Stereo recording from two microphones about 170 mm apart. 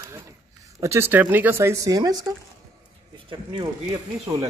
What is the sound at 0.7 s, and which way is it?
Speech, 15° right (ahead or behind).